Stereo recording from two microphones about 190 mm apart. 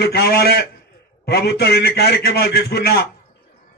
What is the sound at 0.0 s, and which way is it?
A man's voice, 55° left (ahead or behind).